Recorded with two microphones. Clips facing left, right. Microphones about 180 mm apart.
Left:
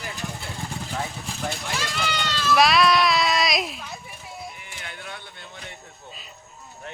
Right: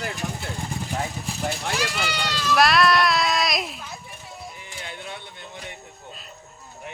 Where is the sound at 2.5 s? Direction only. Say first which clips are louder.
Even; centre (ahead or behind).